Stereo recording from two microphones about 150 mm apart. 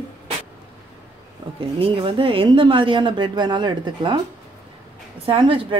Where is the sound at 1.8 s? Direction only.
35° right (ahead or behind).